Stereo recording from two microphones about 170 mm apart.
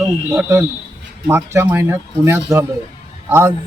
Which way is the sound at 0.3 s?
5° right (ahead or behind).